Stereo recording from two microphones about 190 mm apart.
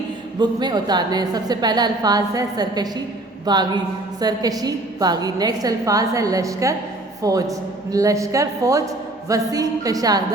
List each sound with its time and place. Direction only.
0.3 s a woman's voice: 20° right (ahead or behind)